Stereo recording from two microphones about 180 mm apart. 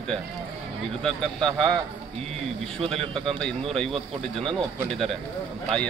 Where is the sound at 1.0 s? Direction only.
5° left (ahead or behind).